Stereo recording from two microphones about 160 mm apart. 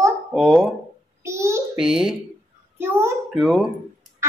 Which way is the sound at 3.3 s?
Centre (ahead or behind).